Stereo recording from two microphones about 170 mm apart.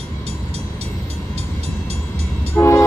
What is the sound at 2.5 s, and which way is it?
Train, 15° left (ahead or behind).